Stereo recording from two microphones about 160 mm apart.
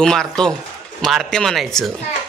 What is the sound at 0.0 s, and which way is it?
Speech, 5° left (ahead or behind).